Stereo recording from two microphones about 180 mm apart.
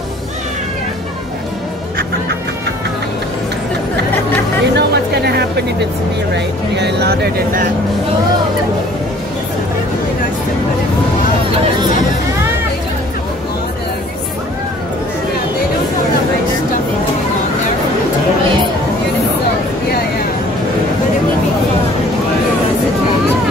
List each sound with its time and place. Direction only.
4.7 s music: 65° right (ahead or behind)
6.3 s speech: 70° right (ahead or behind)